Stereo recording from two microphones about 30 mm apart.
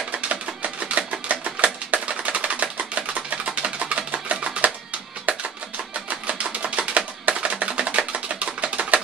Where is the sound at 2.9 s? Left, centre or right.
Right.